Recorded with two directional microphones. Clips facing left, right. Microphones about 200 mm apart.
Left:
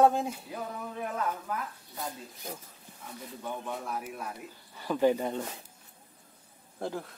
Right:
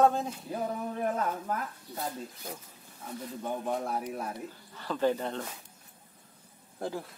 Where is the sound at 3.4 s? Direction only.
40° right (ahead or behind).